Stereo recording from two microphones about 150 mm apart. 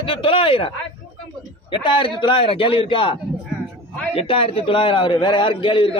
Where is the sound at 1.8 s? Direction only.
35° left (ahead or behind).